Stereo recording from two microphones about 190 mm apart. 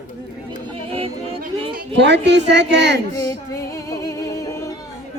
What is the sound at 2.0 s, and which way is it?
A woman's voice, 65° right (ahead or behind).